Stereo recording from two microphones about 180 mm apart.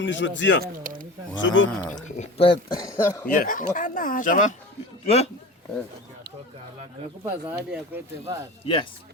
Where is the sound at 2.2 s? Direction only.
30° left (ahead or behind).